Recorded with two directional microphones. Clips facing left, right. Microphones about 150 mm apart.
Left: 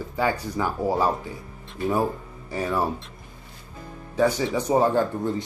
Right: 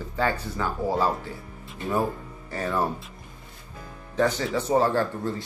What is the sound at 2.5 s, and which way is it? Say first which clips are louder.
Speech: left 2 dB; 10° left (ahead or behind).